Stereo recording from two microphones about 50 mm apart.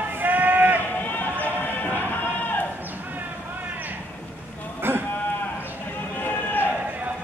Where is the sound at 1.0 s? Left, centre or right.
Left.